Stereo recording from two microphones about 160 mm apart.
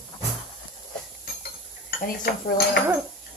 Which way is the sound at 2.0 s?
70° left (ahead or behind).